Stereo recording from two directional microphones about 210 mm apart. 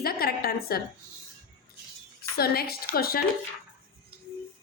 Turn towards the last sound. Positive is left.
turn(degrees=45)  # may be behind; listen again after turning